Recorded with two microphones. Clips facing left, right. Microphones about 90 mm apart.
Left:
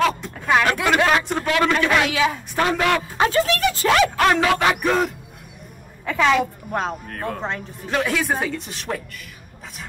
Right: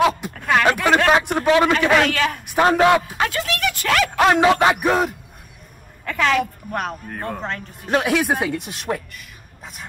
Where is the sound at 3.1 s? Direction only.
30° left (ahead or behind).